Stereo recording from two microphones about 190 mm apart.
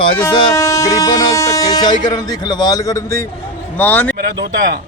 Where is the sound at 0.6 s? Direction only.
15° left (ahead or behind).